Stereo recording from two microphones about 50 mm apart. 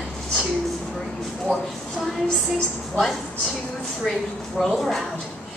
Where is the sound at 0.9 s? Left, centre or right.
Centre.